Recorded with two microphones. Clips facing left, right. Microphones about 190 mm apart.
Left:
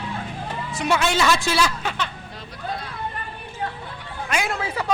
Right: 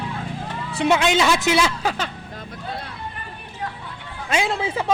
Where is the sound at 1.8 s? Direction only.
35° right (ahead or behind).